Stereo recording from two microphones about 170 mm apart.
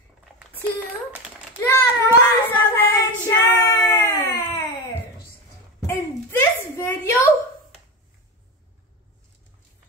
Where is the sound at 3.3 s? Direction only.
15° left (ahead or behind).